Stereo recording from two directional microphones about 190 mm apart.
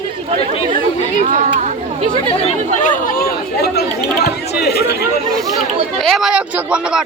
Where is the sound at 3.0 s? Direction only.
50° left (ahead or behind).